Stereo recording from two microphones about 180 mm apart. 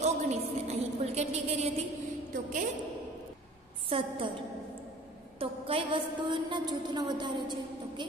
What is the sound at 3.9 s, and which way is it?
Speech, 30° right (ahead or behind).